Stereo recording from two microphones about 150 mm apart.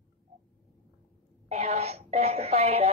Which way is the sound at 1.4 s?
45° right (ahead or behind).